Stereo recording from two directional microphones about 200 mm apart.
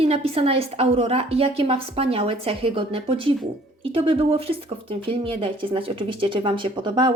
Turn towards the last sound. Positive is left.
turn(degrees=-25)  # may be behind; listen again after turning